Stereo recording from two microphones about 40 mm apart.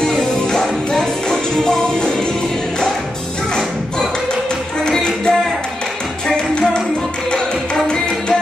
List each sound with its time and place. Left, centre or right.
0.0 s music: centre
4.8 s music: centre
7.7 s music: left